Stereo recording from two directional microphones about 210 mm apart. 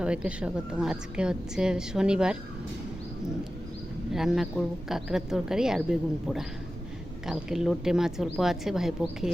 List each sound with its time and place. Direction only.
0.0 s a woman's voice: 5° right (ahead or behind)
4.1 s a woman's voice: centre (ahead or behind)